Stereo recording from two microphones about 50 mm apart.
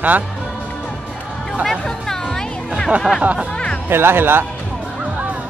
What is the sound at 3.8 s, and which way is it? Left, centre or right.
Speech, right.